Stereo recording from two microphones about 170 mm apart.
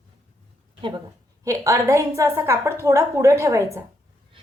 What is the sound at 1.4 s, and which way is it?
A woman's voice, 20° right (ahead or behind).